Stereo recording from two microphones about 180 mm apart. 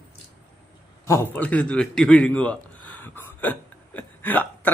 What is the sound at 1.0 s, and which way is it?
A man's voice, 15° left (ahead or behind).